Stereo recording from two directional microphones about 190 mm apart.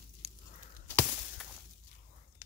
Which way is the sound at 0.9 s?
10° left (ahead or behind).